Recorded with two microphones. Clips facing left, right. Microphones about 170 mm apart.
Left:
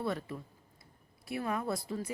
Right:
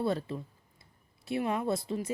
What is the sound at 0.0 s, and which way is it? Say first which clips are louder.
Speech: right 5 dB; 30° right (ahead or behind).